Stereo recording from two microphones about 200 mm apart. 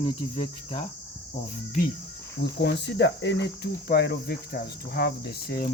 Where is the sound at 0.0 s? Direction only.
25° left (ahead or behind).